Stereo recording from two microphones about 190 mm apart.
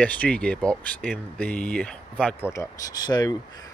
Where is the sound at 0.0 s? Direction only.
5° left (ahead or behind).